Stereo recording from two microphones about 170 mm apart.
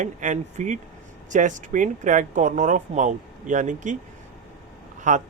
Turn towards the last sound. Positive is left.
turn(degrees=-45)  # may be behind; listen again after turning